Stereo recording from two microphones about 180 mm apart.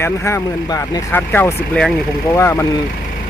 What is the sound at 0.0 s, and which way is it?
Speech, 15° left (ahead or behind).